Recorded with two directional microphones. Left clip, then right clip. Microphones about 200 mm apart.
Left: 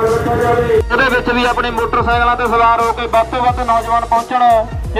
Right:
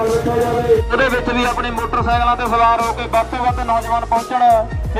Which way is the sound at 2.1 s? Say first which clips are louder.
Left 1 dB; 15° right (ahead or behind).